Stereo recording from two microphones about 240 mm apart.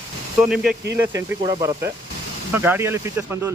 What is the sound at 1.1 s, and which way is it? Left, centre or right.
Speech, centre.